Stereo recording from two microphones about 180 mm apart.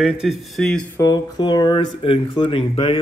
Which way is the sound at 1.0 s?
20° left (ahead or behind).